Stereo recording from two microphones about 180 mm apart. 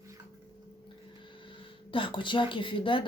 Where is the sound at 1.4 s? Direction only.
30° left (ahead or behind).